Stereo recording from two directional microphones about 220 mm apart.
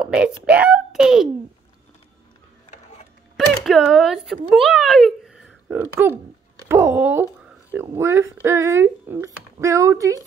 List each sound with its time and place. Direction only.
0.0 s a child's voice: 5° right (ahead or behind)
2.7 s music: 30° left (ahead or behind)
3.3 s a child's voice: centre (ahead or behind)